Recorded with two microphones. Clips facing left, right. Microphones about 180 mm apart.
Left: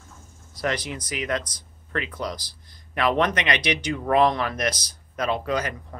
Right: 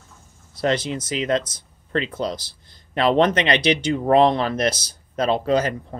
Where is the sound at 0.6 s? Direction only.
25° right (ahead or behind).